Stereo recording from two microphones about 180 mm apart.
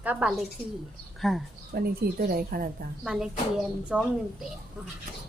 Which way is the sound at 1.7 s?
55° right (ahead or behind).